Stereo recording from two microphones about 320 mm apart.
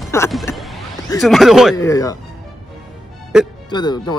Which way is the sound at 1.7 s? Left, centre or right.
Centre.